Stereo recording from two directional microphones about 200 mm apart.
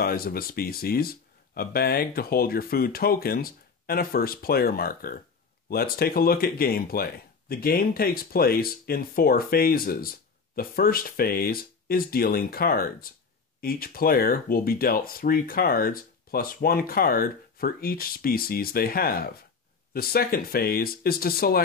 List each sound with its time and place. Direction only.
0.0 s speech: 50° left (ahead or behind)